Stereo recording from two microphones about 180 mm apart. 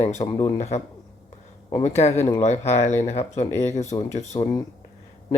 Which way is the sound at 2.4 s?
40° left (ahead or behind).